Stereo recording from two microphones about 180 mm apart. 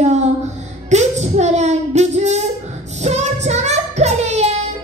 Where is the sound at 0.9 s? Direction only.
40° right (ahead or behind).